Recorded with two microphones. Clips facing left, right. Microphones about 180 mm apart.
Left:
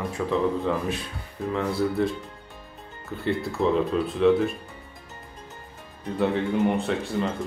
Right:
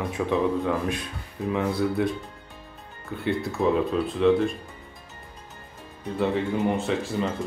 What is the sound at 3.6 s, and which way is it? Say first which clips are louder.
Speech: even; 5° right (ahead or behind).